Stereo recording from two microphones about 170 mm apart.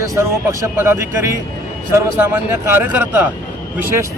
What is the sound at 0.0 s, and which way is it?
Speech, 20° right (ahead or behind).